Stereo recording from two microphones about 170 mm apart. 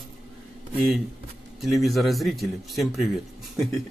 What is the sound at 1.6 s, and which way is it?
Speech, centre (ahead or behind).